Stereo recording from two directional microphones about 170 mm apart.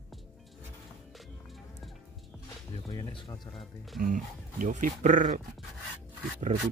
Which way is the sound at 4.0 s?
50° right (ahead or behind).